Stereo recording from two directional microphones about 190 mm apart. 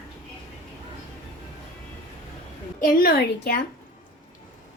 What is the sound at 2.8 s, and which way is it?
Speech, 55° left (ahead or behind).